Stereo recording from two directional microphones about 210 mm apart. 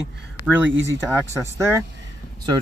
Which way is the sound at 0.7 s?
65° right (ahead or behind).